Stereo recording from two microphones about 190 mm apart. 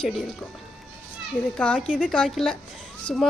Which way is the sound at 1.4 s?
5° left (ahead or behind).